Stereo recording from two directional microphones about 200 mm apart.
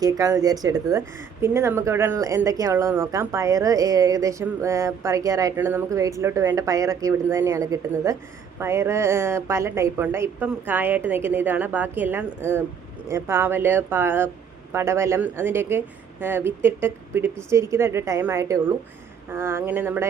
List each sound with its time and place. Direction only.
0.0 s speech: 15° right (ahead or behind)